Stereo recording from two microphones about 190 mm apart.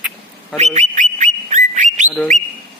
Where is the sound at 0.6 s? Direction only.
35° right (ahead or behind).